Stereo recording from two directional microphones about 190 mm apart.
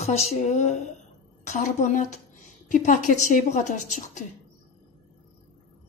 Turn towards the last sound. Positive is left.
turn(degrees=40)  # may be behind; listen again after turning